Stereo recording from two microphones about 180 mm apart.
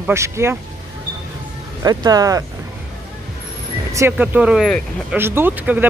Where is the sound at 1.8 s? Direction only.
20° right (ahead or behind).